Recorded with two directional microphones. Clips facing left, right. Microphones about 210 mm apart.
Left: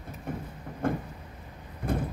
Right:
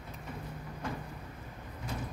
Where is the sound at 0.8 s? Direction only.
55° left (ahead or behind).